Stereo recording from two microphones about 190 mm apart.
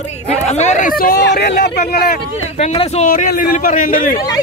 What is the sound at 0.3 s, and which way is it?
Speech, 35° left (ahead or behind).